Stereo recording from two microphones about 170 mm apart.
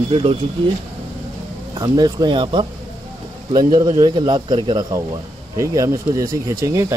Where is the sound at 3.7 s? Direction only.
25° right (ahead or behind).